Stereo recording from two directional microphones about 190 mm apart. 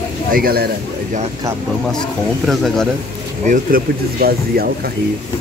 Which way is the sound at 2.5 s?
Centre (ahead or behind).